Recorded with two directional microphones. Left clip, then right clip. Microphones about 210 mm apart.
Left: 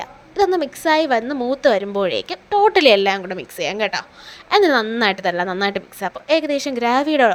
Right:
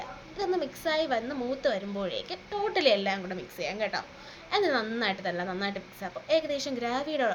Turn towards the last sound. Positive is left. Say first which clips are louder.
# left 13 dB
turn(degrees=45)  # may be behind; listen again after turning